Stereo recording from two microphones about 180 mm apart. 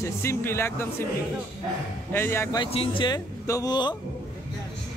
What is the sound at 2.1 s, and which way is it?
Speech, 15° left (ahead or behind).